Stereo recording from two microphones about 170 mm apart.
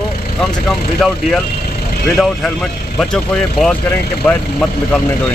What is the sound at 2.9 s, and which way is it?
Speech, 5° left (ahead or behind).